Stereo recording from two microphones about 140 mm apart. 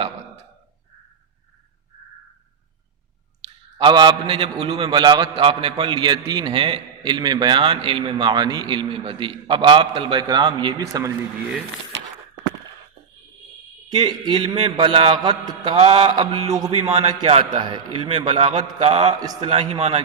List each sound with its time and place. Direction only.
3.8 s a man's voice: 35° right (ahead or behind)
13.9 s a man's voice: 35° right (ahead or behind)
16.1 s a sound: 30° right (ahead or behind)
16.8 s a man's voice: 50° right (ahead or behind)
17.6 s a man's voice: 40° right (ahead or behind)
19.2 s a sound: 25° right (ahead or behind)
19.5 s a man's voice: 45° right (ahead or behind)